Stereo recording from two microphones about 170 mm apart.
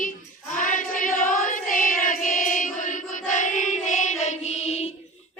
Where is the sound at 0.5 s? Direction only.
50° left (ahead or behind).